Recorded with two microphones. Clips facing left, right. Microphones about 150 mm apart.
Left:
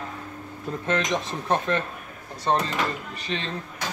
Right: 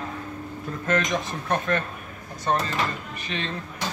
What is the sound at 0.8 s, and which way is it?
Speech, 25° left (ahead or behind).